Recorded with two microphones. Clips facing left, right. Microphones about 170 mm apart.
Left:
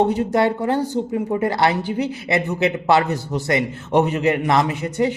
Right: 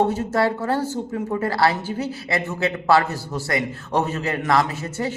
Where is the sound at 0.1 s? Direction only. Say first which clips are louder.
Left 3 dB; 20° left (ahead or behind).